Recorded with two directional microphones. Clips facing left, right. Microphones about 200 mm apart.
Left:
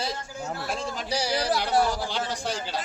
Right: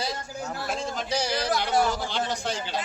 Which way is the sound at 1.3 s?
35° left (ahead or behind).